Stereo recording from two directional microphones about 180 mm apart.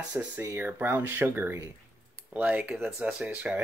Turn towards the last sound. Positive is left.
turn(degrees=-5)  # may be behind; listen again after turning